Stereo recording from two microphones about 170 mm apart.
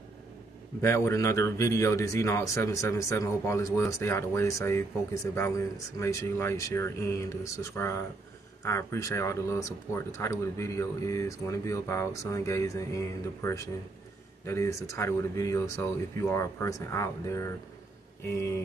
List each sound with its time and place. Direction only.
0.7 s speech: 15° left (ahead or behind)
5.9 s speech: 15° left (ahead or behind)